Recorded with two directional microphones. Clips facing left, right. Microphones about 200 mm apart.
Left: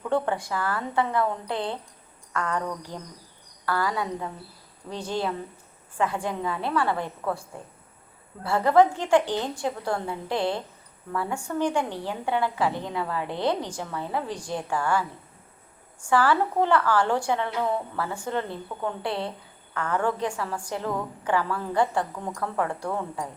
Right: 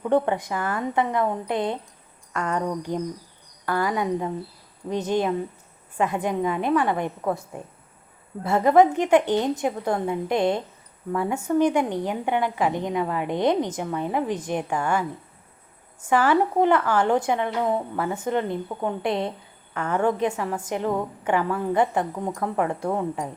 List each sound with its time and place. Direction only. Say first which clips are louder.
0.0 s a woman's voice: right 4 dB; 20° right (ahead or behind)